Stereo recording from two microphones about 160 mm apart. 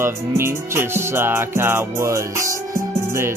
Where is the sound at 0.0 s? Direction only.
15° right (ahead or behind).